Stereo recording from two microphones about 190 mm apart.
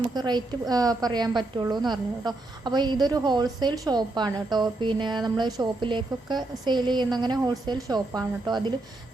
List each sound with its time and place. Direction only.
0.1 s a woman's voice: 20° right (ahead or behind)